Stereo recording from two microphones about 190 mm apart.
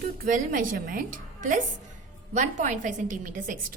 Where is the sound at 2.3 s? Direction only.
40° right (ahead or behind).